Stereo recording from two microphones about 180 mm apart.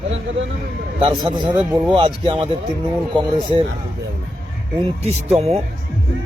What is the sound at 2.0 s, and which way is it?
Speech, 30° right (ahead or behind).